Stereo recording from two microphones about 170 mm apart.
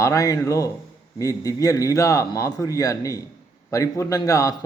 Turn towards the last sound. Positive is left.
turn(degrees=20)  # may be behind; listen again after turning